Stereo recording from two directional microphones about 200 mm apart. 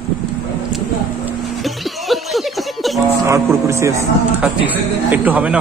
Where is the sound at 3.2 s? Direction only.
15° right (ahead or behind).